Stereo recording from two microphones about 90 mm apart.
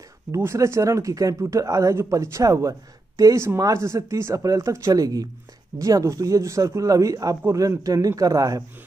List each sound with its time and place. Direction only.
0.3 s speech: 30° right (ahead or behind)